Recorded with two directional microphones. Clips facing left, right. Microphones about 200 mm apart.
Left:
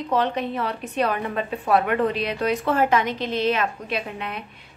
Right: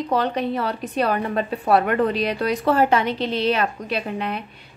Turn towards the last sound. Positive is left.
turn(degrees=-35)  # may be behind; listen again after turning